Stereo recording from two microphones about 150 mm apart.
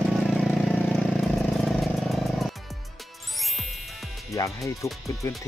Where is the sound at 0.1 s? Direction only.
Centre (ahead or behind).